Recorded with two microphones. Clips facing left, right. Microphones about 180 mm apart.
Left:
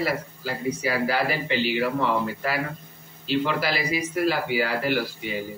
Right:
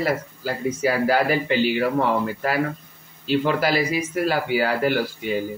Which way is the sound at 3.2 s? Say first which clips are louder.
Right 4 dB; 45° right (ahead or behind).